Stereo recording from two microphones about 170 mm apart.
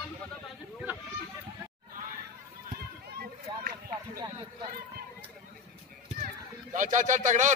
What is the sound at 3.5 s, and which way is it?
Run, 25° right (ahead or behind).